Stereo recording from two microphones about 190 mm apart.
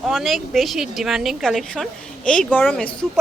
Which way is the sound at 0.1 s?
Centre (ahead or behind).